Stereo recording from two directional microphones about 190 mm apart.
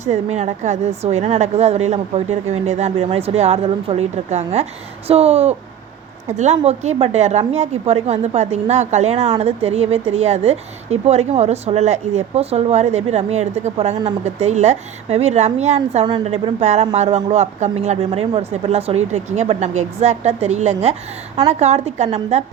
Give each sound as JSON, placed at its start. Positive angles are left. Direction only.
{"t": 0.0, "sound": "a woman's voice", "side_deg": -35}